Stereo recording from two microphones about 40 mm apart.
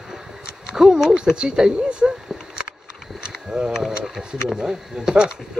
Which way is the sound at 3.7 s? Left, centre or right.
Centre.